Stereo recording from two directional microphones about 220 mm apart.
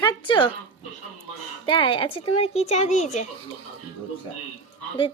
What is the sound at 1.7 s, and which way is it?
A child's voice, 20° left (ahead or behind).